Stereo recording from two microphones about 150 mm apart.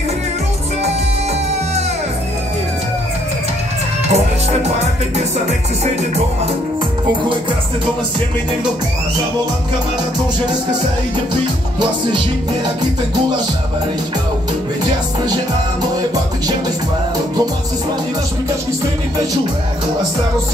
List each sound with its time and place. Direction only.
4.1 s music: 45° right (ahead or behind)